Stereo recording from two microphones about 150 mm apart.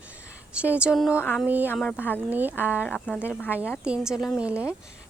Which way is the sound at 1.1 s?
15° left (ahead or behind).